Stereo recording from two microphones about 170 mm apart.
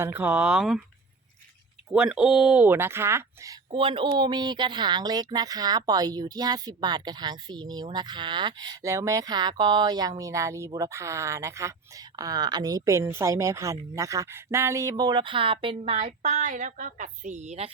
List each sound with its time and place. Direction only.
0.0 s speech: 10° right (ahead or behind)
1.9 s speech: 5° right (ahead or behind)
3.7 s a woman's voice: 30° right (ahead or behind)